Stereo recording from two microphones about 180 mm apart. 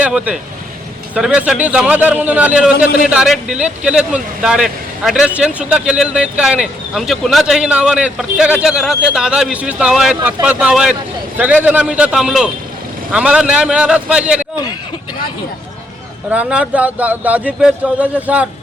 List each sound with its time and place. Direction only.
0.0 s a man's voice: 5° right (ahead or behind)
2.7 s a man's voice: 55° left (ahead or behind)
3.1 s a man's voice: 5° right (ahead or behind)
16.3 s a man's voice: 5° right (ahead or behind)